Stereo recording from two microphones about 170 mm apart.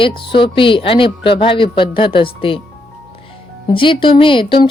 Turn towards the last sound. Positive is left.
turn(degrees=30)  # may be behind; listen again after turning